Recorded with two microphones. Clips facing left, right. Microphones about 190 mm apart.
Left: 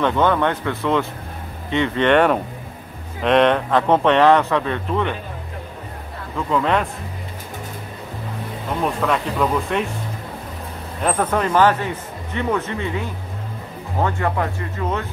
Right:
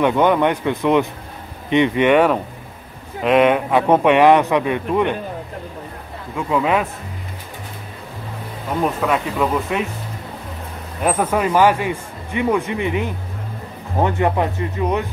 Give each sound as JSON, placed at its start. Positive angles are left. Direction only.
{"t": 0.0, "sound": "speech", "side_deg": -15}
{"t": 6.3, "sound": "speech", "side_deg": -10}
{"t": 8.8, "sound": "speech", "side_deg": -5}
{"t": 11.0, "sound": "speech", "side_deg": -10}